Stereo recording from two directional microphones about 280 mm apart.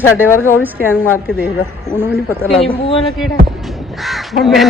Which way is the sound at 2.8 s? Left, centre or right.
Centre.